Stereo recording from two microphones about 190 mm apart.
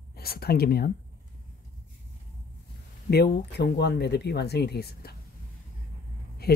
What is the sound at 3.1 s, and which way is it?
Speech, 60° left (ahead or behind).